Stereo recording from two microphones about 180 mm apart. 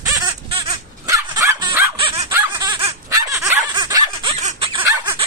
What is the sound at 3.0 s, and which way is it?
Dog, 15° right (ahead or behind).